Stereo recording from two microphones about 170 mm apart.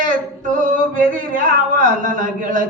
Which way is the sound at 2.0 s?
50° right (ahead or behind).